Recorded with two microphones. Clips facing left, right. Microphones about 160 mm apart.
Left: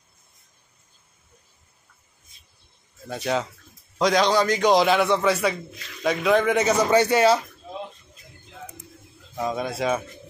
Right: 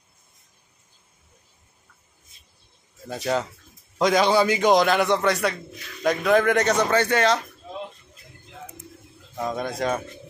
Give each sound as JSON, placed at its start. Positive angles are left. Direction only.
{"t": 3.1, "sound": "a man's voice", "side_deg": 0}
{"t": 9.4, "sound": "a man's voice", "side_deg": 0}